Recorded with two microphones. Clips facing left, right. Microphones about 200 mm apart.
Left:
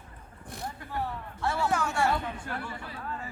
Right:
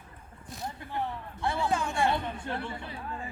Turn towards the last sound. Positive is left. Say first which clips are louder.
# even
turn(degrees=-25)  # may be behind; listen again after turning